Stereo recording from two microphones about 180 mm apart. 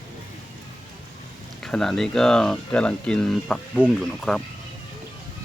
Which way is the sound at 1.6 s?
5° left (ahead or behind).